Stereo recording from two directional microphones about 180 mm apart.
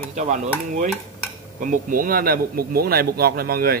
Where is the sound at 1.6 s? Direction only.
50° right (ahead or behind).